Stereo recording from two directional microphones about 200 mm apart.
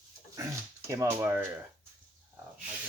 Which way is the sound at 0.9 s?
15° right (ahead or behind).